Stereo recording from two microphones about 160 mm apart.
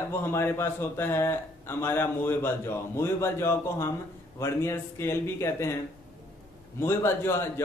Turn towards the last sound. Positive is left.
turn(degrees=15)  # may be behind; listen again after turning